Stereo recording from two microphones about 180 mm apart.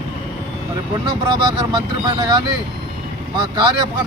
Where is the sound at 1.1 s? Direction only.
25° right (ahead or behind).